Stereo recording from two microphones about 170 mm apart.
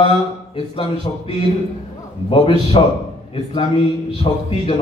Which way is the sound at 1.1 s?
35° left (ahead or behind).